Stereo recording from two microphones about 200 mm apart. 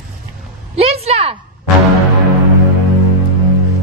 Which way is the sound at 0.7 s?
30° right (ahead or behind).